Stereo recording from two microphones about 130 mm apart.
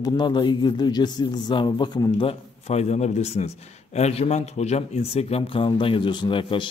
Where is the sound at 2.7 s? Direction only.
60° left (ahead or behind); by 6.7 s 40° left (ahead or behind).